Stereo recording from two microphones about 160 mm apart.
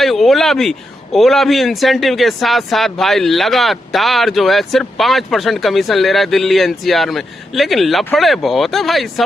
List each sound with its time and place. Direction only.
0.0 s a man's voice: centre (ahead or behind)